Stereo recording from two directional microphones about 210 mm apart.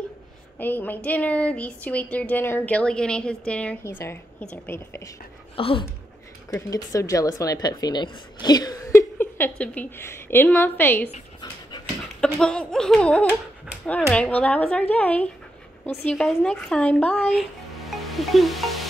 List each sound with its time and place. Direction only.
0.6 s speech: 10° left (ahead or behind)
5.6 s speech: 25° left (ahead or behind)
6.5 s speech: 15° left (ahead or behind)
12.2 s a sound: 5° left (ahead or behind)
13.8 s speech: 5° left (ahead or behind)